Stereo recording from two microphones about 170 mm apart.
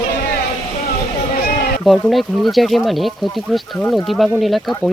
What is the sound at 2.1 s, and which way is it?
Speech, centre (ahead or behind).